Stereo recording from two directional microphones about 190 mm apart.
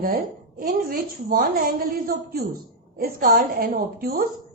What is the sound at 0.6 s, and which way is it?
A woman's voice, 50° right (ahead or behind).